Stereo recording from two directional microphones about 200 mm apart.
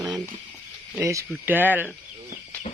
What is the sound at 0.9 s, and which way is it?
Speech, 15° right (ahead or behind).